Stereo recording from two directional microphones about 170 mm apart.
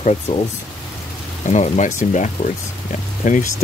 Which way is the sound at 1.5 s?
45° left (ahead or behind).